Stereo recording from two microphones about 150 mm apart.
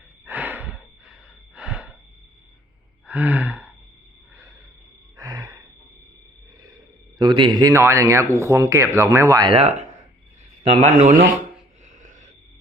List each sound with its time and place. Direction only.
0.3 s a sound: 10° right (ahead or behind)
3.1 s gasp: 10° right (ahead or behind)
5.1 s a sound: 20° right (ahead or behind)
7.2 s speech: 30° right (ahead or behind)
7.7 s speech: 15° right (ahead or behind)
9.5 s speech: 45° right (ahead or behind)
10.8 s speech: 55° right (ahead or behind)